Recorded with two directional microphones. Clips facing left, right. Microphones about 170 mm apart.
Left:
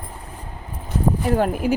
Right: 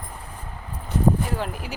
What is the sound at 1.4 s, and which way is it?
Speech, 50° left (ahead or behind).